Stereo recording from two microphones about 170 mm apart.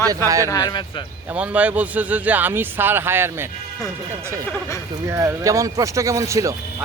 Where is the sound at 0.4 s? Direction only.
25° left (ahead or behind).